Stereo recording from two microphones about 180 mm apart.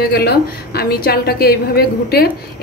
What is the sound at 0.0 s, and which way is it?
A woman's voice, 60° left (ahead or behind).